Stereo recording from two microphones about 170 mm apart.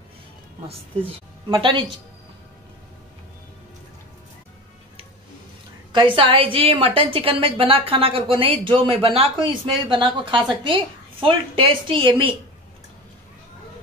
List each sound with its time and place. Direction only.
1.5 s a woman's voice: 30° right (ahead or behind)
5.9 s a woman's voice: 30° right (ahead or behind)